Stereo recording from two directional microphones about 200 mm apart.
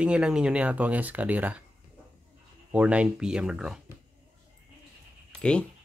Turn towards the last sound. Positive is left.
turn(degrees=5)  # may be behind; listen again after turning